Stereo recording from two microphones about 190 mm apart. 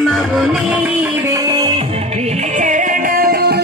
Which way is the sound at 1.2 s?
20° right (ahead or behind).